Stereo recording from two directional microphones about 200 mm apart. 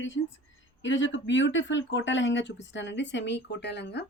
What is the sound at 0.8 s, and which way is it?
Speech, 65° left (ahead or behind).